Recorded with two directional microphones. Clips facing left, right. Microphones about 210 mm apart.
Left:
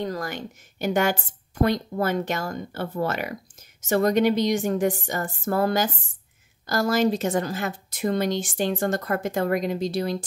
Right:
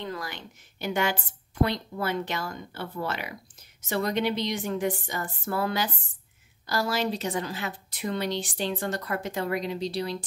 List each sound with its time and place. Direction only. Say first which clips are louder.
0.0 s speech: left 6 dB; 45° left (ahead or behind)